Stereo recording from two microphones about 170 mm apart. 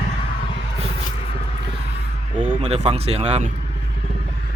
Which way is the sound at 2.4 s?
40° right (ahead or behind).